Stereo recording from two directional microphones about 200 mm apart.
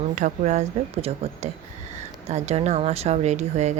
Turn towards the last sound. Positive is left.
turn(degrees=-35)  # may be behind; listen again after turning